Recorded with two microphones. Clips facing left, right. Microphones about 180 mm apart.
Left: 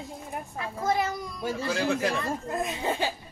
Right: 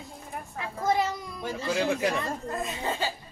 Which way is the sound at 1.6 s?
15° right (ahead or behind).